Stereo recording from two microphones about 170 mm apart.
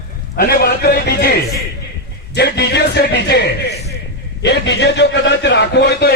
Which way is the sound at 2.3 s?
75° left (ahead or behind).